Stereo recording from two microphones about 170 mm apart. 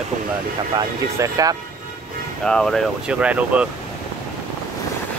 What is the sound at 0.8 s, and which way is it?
Speech, 20° right (ahead or behind).